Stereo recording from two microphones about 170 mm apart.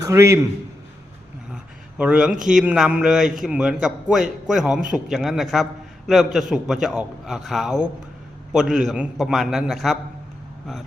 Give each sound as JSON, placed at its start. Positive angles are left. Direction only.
{"t": 0.0, "sound": "a man's voice", "side_deg": -15}
{"t": 2.0, "sound": "a man's voice", "side_deg": -5}